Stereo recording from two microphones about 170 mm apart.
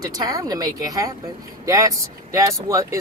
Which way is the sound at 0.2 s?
20° right (ahead or behind).